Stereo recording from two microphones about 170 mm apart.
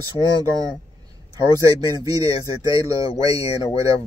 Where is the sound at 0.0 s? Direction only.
25° right (ahead or behind).